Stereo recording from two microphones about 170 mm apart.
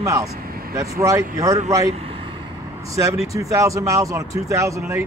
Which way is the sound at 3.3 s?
20° right (ahead or behind).